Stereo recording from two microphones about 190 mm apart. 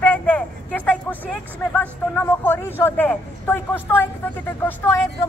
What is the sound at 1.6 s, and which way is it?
Speech, 10° left (ahead or behind).